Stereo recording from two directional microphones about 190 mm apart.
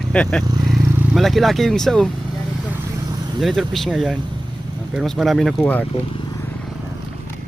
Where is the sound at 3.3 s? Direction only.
Centre (ahead or behind).